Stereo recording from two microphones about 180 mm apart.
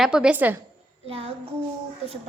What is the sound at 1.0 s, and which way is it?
Child singing, 30° right (ahead or behind).